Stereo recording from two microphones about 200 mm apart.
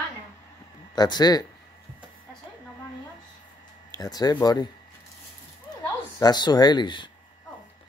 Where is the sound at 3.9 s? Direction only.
20° left (ahead or behind).